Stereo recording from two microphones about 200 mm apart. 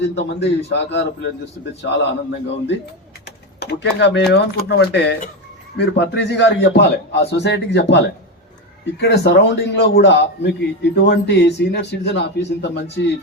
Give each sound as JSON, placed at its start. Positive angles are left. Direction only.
{"t": 0.0, "sound": "a man's voice", "side_deg": 60}
{"t": 3.2, "sound": "typing", "side_deg": 55}
{"t": 4.3, "sound": "a man's voice", "side_deg": 55}